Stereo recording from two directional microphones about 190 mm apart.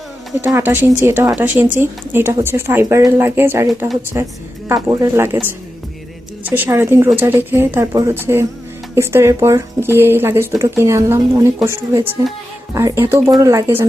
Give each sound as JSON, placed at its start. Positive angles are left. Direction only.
{"t": 0.4, "sound": "speech", "side_deg": -10}